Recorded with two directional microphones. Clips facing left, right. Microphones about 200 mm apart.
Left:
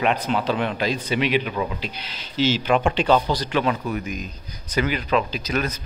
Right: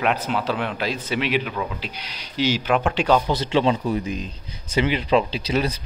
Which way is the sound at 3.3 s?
25° right (ahead or behind).